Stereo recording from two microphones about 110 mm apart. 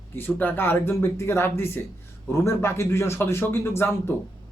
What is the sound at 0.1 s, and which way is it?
Speech, 20° left (ahead or behind).